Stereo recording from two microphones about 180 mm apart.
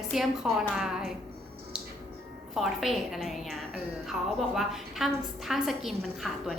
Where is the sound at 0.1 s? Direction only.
Centre (ahead or behind).